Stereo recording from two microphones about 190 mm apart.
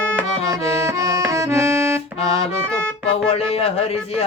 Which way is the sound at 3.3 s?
30° left (ahead or behind).